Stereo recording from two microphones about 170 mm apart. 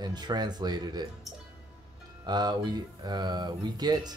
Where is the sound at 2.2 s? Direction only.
25° right (ahead or behind).